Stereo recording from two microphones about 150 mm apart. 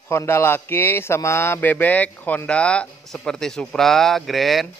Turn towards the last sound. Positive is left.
turn(degrees=0)  # may be behind; listen again after turning